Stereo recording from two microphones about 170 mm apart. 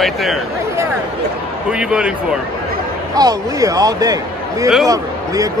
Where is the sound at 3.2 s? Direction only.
20° right (ahead or behind).